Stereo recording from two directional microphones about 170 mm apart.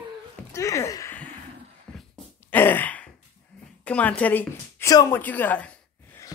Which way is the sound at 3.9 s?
10° left (ahead or behind).